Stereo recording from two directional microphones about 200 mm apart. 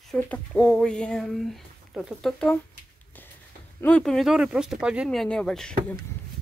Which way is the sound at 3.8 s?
5° left (ahead or behind).